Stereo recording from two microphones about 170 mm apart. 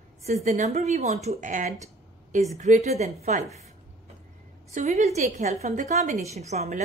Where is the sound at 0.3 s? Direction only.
40° right (ahead or behind).